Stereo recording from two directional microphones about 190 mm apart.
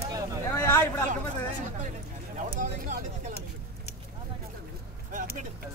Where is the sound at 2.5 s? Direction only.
45° right (ahead or behind).